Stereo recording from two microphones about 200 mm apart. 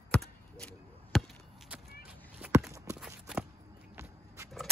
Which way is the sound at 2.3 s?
10° right (ahead or behind).